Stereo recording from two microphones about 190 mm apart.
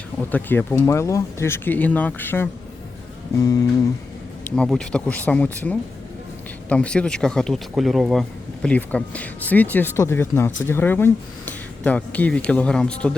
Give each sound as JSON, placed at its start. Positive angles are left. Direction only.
{"t": 0.3, "sound": "speech", "side_deg": 10}
{"t": 4.5, "sound": "speech", "side_deg": 5}